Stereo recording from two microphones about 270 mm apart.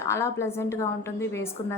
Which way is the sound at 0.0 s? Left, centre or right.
Centre.